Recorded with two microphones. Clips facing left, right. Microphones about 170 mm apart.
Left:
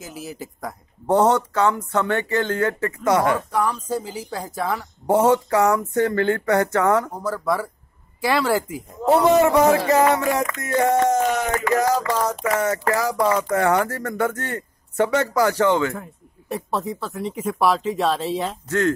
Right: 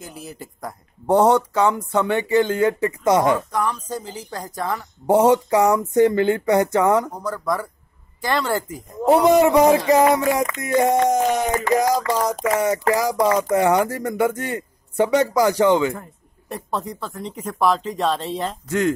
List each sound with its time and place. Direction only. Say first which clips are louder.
0.0 s speech: left 2 dB; centre (ahead or behind)
1.0 s speech: right 2 dB; 10° right (ahead or behind)
3.5 s speech: left 2 dB; 10° left (ahead or behind)
5.0 s speech: right 2 dB; 15° right (ahead or behind)
7.2 s speech: left 1 dB; 5° left (ahead or behind)
9.0 s speech: right 1 dB; 15° right (ahead or behind)
15.9 s speech: right 1 dB; centre (ahead or behind)
18.7 s speech: even; 15° right (ahead or behind)